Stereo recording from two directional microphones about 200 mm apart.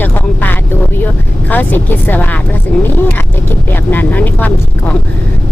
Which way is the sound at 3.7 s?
10° left (ahead or behind).